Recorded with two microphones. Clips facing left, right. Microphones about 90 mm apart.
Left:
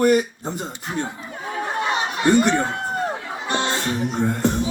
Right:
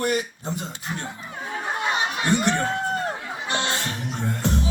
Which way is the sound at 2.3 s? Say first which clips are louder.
Left 5 dB; 45° left (ahead or behind).